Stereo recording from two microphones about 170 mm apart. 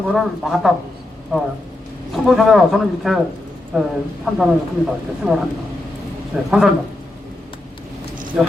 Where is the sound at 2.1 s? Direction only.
Centre (ahead or behind).